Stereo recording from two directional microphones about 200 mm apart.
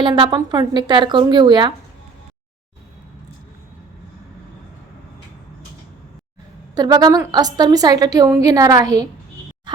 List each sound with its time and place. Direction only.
0.0 s a woman's voice: 20° right (ahead or behind)
6.7 s a woman's voice: 20° right (ahead or behind)